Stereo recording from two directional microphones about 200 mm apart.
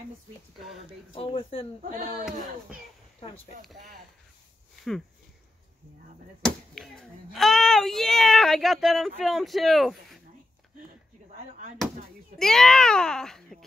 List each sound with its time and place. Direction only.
1.1 s speech: 25° left (ahead or behind)
1.8 s speech: 40° right (ahead or behind)
6.4 s a child's voice: centre (ahead or behind)
11.3 s speech: 40° right (ahead or behind)
12.4 s a child's voice: centre (ahead or behind)